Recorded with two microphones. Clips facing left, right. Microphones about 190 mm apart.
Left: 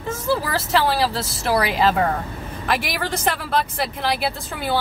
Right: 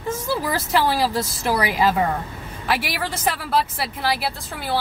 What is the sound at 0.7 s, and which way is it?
A woman's voice, 15° right (ahead or behind).